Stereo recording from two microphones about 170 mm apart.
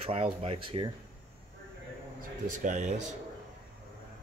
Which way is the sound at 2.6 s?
45° right (ahead or behind).